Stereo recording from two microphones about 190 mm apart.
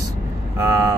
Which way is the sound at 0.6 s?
15° right (ahead or behind).